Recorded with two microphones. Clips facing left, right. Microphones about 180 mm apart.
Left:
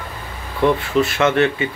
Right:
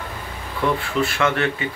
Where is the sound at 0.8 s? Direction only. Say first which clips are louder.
Left 4 dB; 20° left (ahead or behind).